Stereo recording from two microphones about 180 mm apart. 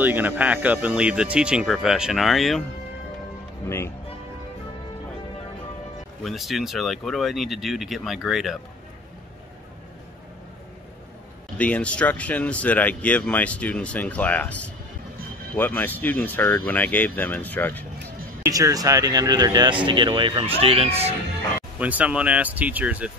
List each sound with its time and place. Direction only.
0.0 s speech: 10° right (ahead or behind)
3.6 s speech: 15° left (ahead or behind)
6.2 s speech: centre (ahead or behind)
11.5 s speech: 10° left (ahead or behind)
18.4 s speech: 20° right (ahead or behind); by 21.1 s 35° right (ahead or behind)
21.7 s speech: 10° right (ahead or behind)